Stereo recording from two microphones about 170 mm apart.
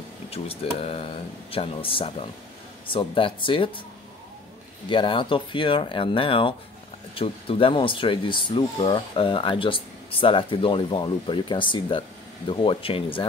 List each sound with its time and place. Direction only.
0.7 s speech: 35° left (ahead or behind)
4.8 s speech: 30° left (ahead or behind)